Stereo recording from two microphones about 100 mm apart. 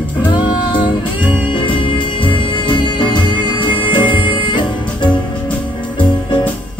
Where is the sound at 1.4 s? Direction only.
55° left (ahead or behind).